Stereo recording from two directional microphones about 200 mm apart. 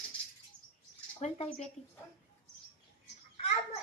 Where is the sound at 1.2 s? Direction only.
35° left (ahead or behind).